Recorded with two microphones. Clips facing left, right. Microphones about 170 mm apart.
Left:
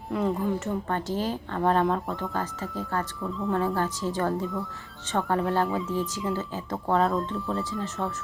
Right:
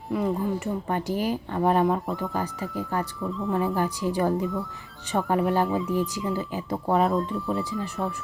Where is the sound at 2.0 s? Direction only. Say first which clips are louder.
Right 2 dB; centre (ahead or behind).